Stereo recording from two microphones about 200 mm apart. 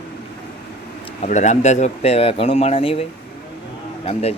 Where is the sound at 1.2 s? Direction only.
35° left (ahead or behind).